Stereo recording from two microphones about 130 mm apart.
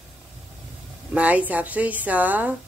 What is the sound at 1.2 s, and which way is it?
A woman's voice, 10° right (ahead or behind).